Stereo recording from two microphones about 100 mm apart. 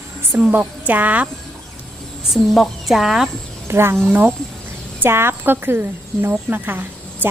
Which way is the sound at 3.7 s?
25° right (ahead or behind).